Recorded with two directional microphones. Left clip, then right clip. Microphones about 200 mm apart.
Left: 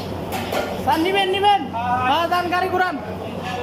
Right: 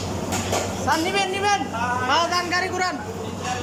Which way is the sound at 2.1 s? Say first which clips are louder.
Left 1 dB; 15° left (ahead or behind).